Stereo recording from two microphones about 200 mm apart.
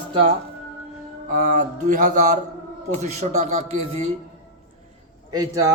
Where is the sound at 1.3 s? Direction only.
40° right (ahead or behind).